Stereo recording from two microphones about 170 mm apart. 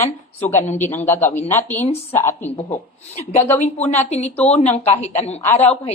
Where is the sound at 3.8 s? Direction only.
40° left (ahead or behind).